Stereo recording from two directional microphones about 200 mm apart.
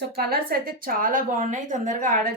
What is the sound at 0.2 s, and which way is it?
A woman's voice, 50° right (ahead or behind).